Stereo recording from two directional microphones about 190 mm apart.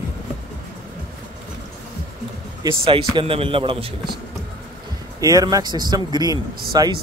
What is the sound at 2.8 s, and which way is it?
Speech, 30° right (ahead or behind).